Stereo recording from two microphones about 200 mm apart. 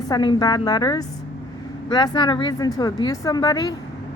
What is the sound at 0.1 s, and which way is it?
A woman's voice, 20° left (ahead or behind).